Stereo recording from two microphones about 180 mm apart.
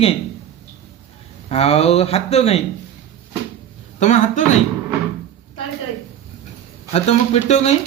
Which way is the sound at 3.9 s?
40° left (ahead or behind).